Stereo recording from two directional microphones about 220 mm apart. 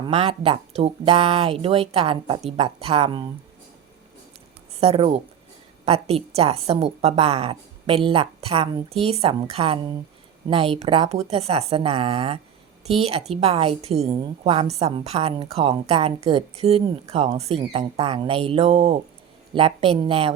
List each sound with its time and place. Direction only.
0.0 s a woman's voice: 25° right (ahead or behind)
4.8 s a woman's voice: 25° right (ahead or behind)